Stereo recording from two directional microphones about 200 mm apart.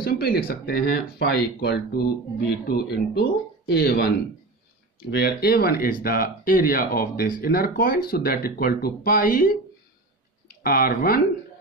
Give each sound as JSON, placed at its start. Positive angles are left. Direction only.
{"t": 0.0, "sound": "speech", "side_deg": 50}
{"t": 5.1, "sound": "speech", "side_deg": 50}
{"t": 10.6, "sound": "speech", "side_deg": 45}